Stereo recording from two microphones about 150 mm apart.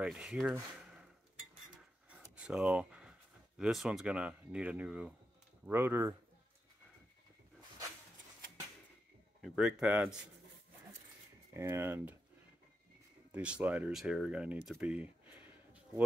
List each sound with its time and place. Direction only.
0.0 s speech: 5° right (ahead or behind)
2.0 s speech: 10° right (ahead or behind)
9.4 s speech: 5° right (ahead or behind)
11.5 s speech: 20° right (ahead or behind)
13.3 s speech: 10° right (ahead or behind)